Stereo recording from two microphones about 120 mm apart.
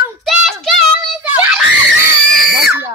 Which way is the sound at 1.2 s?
15° right (ahead or behind).